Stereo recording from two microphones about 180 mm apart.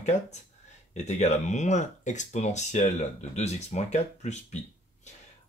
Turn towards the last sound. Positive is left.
turn(degrees=40)  # may be behind; listen again after turning